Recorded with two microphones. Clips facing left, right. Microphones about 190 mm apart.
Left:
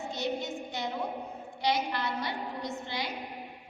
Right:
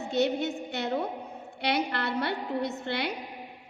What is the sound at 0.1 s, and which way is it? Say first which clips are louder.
A woman's voice: right 8 dB; 65° right (ahead or behind).